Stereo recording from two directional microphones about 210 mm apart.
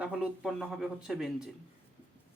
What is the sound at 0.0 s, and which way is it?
Speech, 5° right (ahead or behind).